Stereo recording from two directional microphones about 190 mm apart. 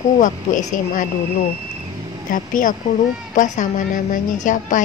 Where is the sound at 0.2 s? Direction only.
45° left (ahead or behind).